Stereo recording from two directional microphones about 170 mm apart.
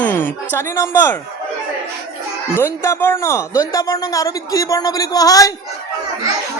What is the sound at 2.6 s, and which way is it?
Speech, 15° left (ahead or behind).